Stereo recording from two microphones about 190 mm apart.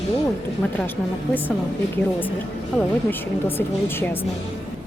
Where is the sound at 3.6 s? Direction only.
10° left (ahead or behind).